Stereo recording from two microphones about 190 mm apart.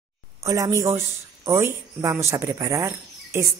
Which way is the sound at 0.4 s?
15° right (ahead or behind).